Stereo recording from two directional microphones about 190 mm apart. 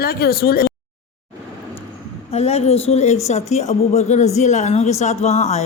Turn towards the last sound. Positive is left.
turn(degrees=35)  # may be behind; listen again after turning